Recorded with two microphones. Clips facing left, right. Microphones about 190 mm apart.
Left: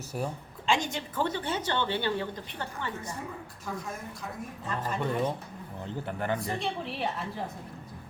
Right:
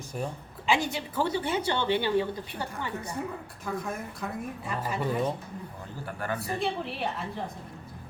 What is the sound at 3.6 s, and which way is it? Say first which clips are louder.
Speech: right 4 dB; 55° right (ahead or behind).